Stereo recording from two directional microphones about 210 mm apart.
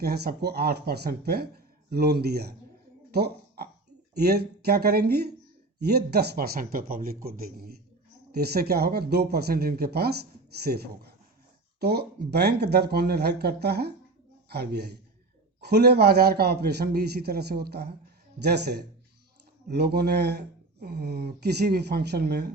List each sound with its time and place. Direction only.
0.0 s speech: 50° right (ahead or behind)